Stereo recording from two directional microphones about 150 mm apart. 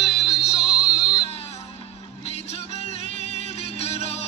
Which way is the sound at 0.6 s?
5° right (ahead or behind).